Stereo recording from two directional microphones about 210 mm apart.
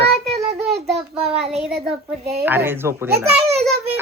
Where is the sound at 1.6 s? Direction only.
Centre (ahead or behind).